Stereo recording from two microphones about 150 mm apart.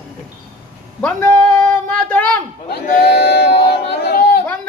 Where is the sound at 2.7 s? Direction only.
90° left.